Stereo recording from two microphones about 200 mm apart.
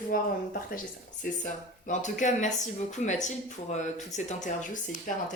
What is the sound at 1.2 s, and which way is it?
Speech, 40° left (ahead or behind).